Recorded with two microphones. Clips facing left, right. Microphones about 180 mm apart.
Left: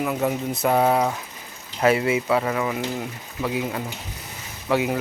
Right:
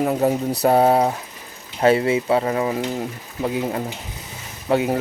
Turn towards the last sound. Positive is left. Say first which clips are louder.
# right 3 dB
turn(degrees=-30)  # may be behind; listen again after turning